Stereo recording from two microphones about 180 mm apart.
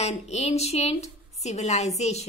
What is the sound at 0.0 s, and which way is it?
A woman's voice, 35° left (ahead or behind).